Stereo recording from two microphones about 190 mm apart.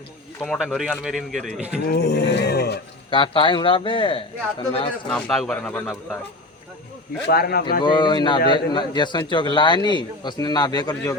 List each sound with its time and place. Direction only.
0.3 s speech: 5° left (ahead or behind)
1.9 s a sound: 60° left (ahead or behind)
3.1 s a man's voice: 25° left (ahead or behind)
5.0 s speech: centre (ahead or behind)
7.3 s speech: 55° left (ahead or behind)
7.8 s a man's voice: 25° left (ahead or behind)